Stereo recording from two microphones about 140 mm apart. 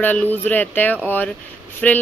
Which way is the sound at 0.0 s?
10° left (ahead or behind).